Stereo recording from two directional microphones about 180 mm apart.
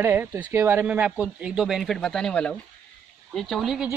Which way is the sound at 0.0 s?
10° right (ahead or behind).